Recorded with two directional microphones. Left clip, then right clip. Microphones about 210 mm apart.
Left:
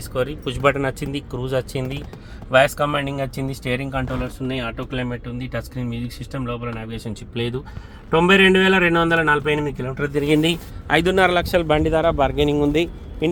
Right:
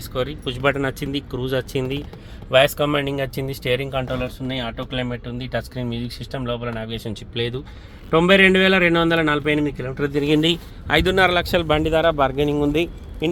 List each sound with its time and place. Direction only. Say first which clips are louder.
0.1 s a man's voice: left 1 dB; centre (ahead or behind)
2.6 s speech: even; 25° right (ahead or behind)
7.1 s a man's voice: left 1 dB; 10° right (ahead or behind)